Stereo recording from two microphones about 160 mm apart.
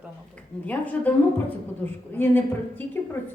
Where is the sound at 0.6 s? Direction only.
10° left (ahead or behind).